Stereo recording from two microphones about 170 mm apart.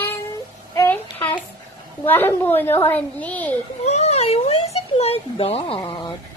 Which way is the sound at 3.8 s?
40° left (ahead or behind).